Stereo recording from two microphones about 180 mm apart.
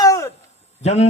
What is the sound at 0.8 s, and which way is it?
Speech, 40° left (ahead or behind).